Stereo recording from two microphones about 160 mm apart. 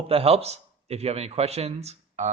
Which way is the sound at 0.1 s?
40° right (ahead or behind).